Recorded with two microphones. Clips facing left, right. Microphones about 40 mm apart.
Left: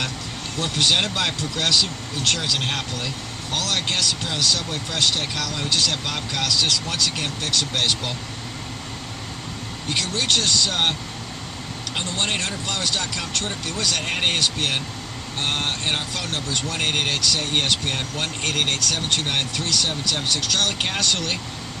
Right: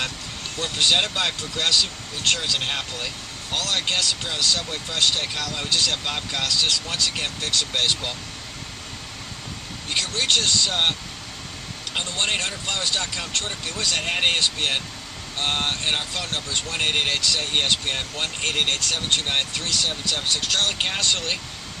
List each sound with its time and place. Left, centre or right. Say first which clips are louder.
0.6 s speech: even; centre
9.9 s speech: even; centre
11.9 s speech: even; centre
12.6 s speech: left 1 dB; centre